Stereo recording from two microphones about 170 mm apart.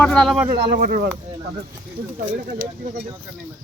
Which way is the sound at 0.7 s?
60° right (ahead or behind).